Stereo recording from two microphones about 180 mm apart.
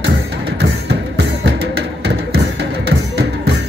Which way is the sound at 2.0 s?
70° right (ahead or behind).